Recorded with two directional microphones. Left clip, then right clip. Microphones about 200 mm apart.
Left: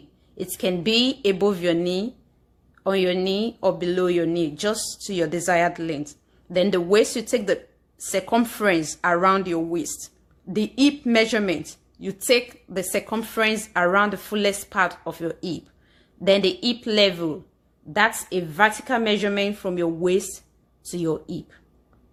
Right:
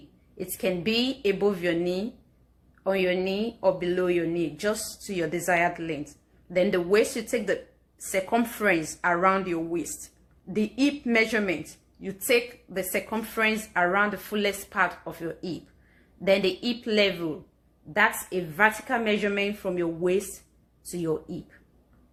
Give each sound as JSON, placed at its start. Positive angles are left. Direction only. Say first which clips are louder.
{"t": 0.3, "sound": "a woman's voice", "louder": "left 3 dB", "side_deg": 45}